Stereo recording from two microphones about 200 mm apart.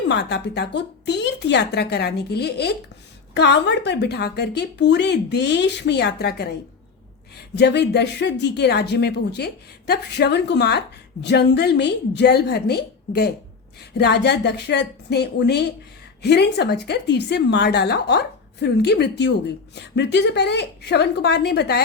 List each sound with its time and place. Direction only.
0.1 s speech: 55° left (ahead or behind)
7.5 s speech: 60° left (ahead or behind)